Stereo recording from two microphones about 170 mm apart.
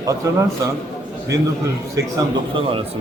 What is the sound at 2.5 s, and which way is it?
Speech, 30° right (ahead or behind).